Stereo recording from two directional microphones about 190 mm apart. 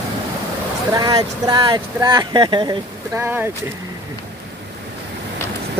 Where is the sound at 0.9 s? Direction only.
20° right (ahead or behind).